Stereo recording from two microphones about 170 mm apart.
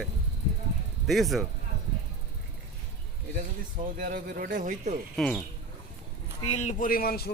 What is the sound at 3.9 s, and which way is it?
Speech, 55° right (ahead or behind).